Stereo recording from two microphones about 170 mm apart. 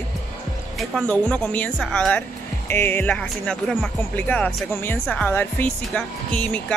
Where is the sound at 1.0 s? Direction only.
10° left (ahead or behind).